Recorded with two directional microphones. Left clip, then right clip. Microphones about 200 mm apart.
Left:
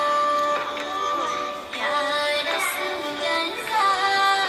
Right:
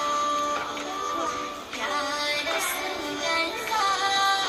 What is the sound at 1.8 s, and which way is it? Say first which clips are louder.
Music: left 5 dB; 20° left (ahead or behind).